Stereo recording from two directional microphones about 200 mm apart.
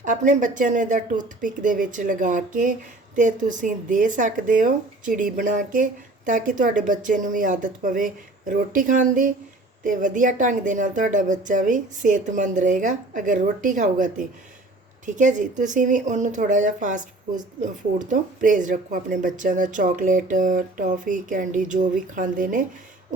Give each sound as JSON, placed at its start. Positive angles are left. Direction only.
{"t": 0.0, "sound": "speech", "side_deg": -40}